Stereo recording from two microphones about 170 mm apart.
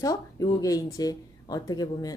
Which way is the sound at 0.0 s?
20° left (ahead or behind).